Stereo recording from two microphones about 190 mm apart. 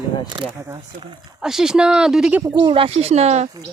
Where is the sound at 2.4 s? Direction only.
20° right (ahead or behind).